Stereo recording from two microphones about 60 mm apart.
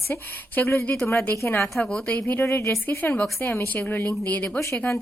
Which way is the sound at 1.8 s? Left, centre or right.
Left.